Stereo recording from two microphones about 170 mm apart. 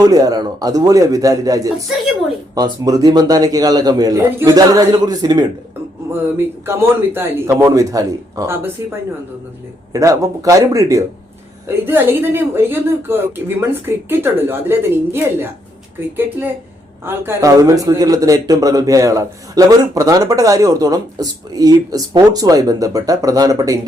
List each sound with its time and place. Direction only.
0.0 s a man's voice: 20° right (ahead or behind)
6.7 s a woman's voice: 15° right (ahead or behind)
9.9 s a man's voice: 20° right (ahead or behind)